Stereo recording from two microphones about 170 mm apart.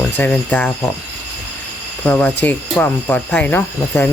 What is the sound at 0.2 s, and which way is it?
Speech, 10° left (ahead or behind).